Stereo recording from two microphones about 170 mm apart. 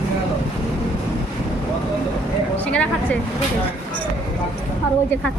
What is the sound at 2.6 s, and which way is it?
Speech, 10° left (ahead or behind).